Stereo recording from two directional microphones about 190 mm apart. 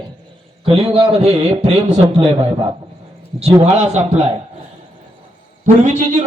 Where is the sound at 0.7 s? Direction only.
30° right (ahead or behind).